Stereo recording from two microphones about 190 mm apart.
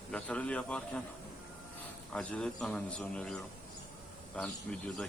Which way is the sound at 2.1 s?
5° left (ahead or behind).